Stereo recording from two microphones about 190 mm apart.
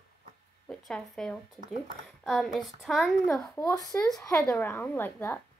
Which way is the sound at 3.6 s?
20° left (ahead or behind).